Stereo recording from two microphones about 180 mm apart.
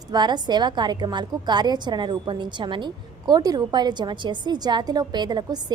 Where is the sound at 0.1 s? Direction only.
25° right (ahead or behind).